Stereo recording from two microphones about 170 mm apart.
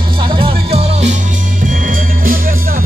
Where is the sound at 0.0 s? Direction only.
30° right (ahead or behind).